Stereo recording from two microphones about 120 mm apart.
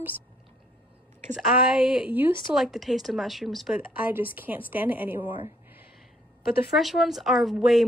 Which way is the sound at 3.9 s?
15° right (ahead or behind).